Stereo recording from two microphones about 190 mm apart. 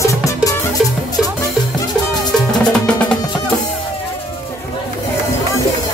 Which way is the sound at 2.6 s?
5° left (ahead or behind).